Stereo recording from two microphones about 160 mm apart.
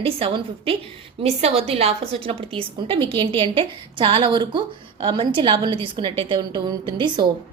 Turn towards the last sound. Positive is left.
turn(degrees=-30)  # may be behind; listen again after turning